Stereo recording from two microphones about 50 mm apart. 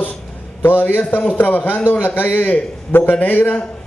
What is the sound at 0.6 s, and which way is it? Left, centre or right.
A man's voice, left.